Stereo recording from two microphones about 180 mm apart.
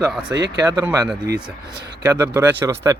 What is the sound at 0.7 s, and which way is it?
Speech, 20° right (ahead or behind).